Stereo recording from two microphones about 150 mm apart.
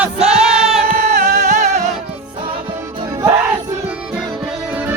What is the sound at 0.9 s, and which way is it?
Music, 90° right.